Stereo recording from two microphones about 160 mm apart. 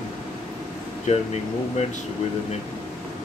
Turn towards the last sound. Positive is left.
turn(degrees=45)  # may be behind; listen again after turning